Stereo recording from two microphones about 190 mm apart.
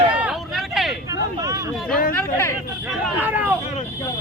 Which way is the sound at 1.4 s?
20° right (ahead or behind).